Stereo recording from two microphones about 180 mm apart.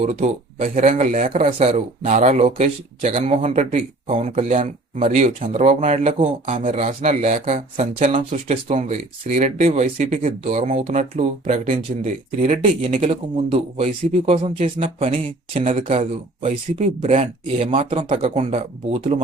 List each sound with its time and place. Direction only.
0.2 s speech: 35° right (ahead or behind)